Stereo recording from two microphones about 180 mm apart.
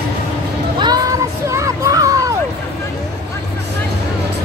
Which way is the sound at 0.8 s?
20° right (ahead or behind).